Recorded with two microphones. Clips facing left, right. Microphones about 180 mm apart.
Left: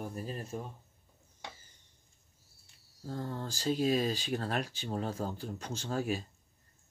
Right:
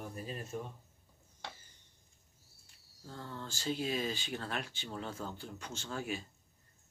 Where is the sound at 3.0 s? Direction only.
40° left (ahead or behind).